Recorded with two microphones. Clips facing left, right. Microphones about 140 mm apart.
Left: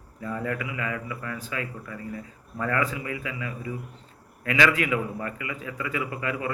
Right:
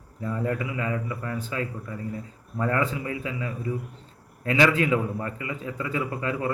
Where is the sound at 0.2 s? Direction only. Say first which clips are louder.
Right 2 dB; 25° right (ahead or behind).